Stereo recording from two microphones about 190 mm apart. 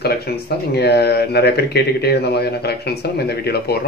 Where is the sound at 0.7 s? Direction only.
60° left (ahead or behind).